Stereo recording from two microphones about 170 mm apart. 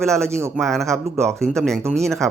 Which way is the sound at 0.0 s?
5° left (ahead or behind).